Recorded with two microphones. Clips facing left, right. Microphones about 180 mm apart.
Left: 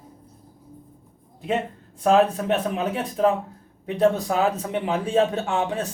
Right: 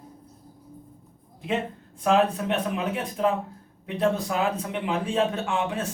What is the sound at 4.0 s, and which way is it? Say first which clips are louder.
Speech: left 4 dB; 40° left (ahead or behind).